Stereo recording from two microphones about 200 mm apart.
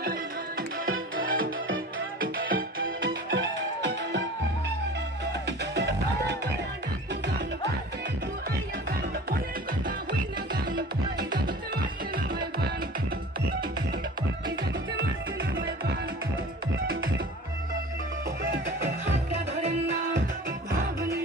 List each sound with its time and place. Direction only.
0.0 s music: 45° right (ahead or behind)
3.1 s music: 65° right (ahead or behind)
5.8 s music: 55° right (ahead or behind)
12.4 s music: 50° right (ahead or behind)